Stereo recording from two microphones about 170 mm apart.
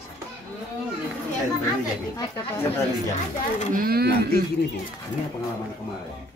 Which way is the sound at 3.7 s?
65° right (ahead or behind).